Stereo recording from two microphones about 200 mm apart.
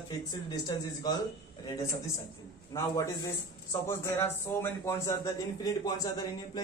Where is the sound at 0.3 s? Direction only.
20° left (ahead or behind).